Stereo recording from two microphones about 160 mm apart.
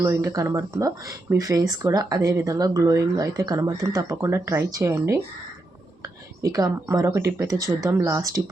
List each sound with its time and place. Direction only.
0.0 s speech: 20° right (ahead or behind)